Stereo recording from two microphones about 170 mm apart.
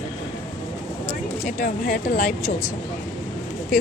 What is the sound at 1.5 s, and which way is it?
Speech, 50° left (ahead or behind).